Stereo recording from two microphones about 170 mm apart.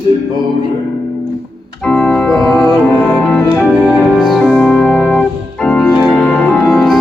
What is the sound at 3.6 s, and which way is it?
Music, 5° right (ahead or behind).